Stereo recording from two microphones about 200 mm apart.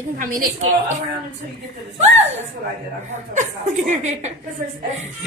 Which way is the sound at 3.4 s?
35° right (ahead or behind).